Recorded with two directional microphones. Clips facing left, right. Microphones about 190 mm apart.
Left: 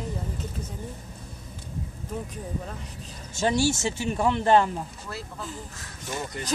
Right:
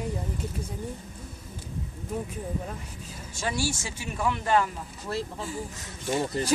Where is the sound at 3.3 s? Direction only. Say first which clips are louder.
Left 6 dB; 25° left (ahead or behind).